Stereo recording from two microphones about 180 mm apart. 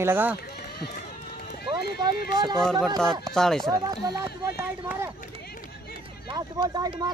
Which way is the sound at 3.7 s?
20° right (ahead or behind).